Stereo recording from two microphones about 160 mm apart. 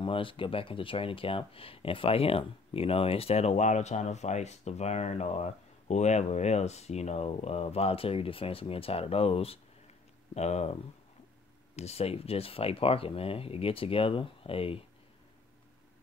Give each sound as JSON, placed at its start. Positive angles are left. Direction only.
{"t": 0.0, "sound": "speech", "side_deg": 35}